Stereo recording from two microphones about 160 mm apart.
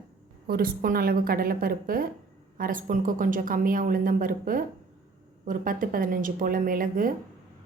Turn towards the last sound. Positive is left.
turn(degrees=-60)  # may be behind; listen again after turning